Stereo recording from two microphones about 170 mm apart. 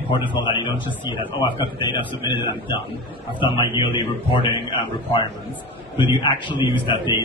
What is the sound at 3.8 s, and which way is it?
Speech, 30° left (ahead or behind).